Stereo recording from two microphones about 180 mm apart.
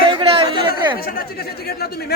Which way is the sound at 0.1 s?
25° right (ahead or behind).